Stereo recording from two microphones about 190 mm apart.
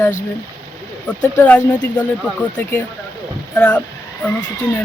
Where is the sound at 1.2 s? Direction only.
15° left (ahead or behind).